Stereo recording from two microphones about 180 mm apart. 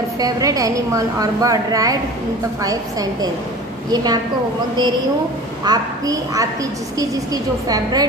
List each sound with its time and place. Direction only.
0.2 s a woman's voice: 20° right (ahead or behind)
5.7 s a woman's voice: 20° right (ahead or behind)
7.6 s a woman's voice: 20° right (ahead or behind)